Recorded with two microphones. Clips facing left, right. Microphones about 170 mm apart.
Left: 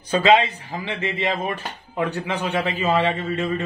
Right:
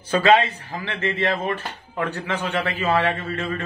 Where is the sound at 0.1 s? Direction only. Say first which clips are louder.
Even; 15° left (ahead or behind).